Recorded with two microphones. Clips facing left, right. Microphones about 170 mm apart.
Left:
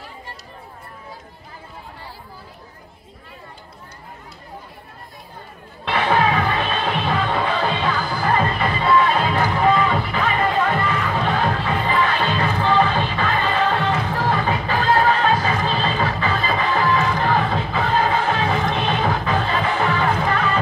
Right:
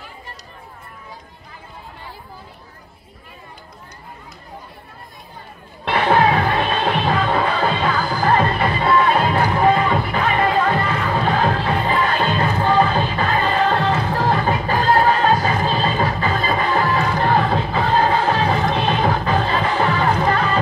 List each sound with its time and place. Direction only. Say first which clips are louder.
5.9 s music: right 3 dB; 45° right (ahead or behind)